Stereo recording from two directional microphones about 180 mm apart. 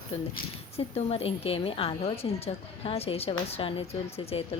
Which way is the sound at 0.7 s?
35° left (ahead or behind).